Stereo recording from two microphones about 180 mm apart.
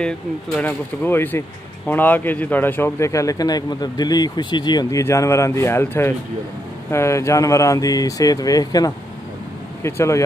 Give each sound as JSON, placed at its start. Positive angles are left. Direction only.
{"t": 0.6, "sound": "a man's voice", "side_deg": 10}